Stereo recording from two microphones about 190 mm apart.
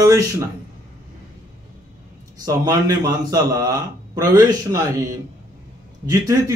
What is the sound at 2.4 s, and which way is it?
Speech, 20° right (ahead or behind).